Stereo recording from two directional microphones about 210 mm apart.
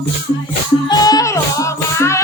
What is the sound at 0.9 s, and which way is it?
Music, 20° left (ahead or behind).